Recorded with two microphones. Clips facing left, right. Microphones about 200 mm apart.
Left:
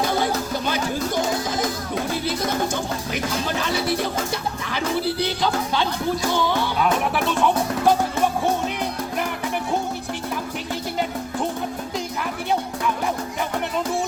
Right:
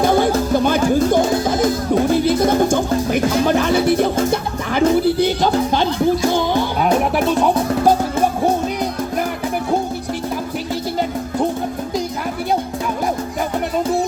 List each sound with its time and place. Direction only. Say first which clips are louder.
0.0 s music: right 7 dB; 50° right (ahead or behind)